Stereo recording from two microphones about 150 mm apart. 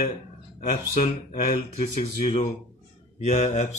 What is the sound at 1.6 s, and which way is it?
Mantra, 40° left (ahead or behind).